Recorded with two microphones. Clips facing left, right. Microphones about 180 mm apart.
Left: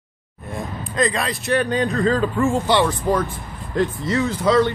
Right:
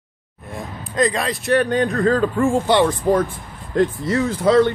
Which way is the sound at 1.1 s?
50° right (ahead or behind).